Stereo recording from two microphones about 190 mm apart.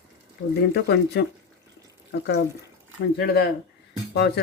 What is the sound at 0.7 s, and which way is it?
Speech, 60° left (ahead or behind).